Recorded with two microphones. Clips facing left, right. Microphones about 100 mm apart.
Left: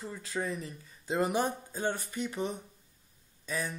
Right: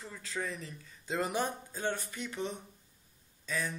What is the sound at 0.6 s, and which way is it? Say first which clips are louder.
Speech: left 4 dB; 10° left (ahead or behind).